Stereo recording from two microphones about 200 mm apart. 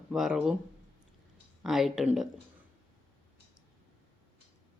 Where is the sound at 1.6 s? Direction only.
Centre (ahead or behind).